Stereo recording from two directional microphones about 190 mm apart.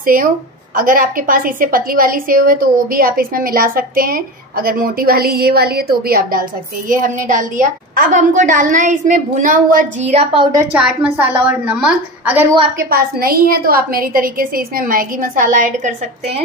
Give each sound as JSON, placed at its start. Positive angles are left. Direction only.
{"t": 0.0, "sound": "a woman's voice", "side_deg": -50}
{"t": 10.7, "sound": "a woman's voice", "side_deg": -5}
{"t": 12.7, "sound": "a woman's voice", "side_deg": -50}